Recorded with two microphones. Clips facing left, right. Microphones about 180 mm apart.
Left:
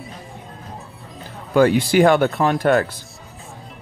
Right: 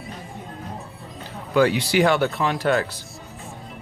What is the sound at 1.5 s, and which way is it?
Speech, 45° left (ahead or behind).